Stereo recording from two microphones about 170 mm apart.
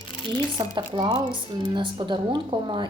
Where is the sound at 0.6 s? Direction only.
25° right (ahead or behind).